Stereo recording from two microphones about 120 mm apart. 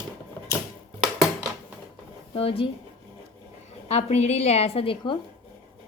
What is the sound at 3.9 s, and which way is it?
A woman's voice, 65° left (ahead or behind).